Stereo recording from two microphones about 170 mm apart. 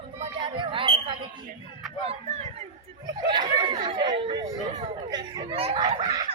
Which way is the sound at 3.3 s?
25° right (ahead or behind).